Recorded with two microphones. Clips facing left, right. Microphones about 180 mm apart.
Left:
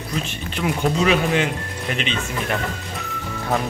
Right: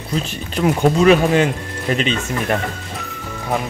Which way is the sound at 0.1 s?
40° right (ahead or behind).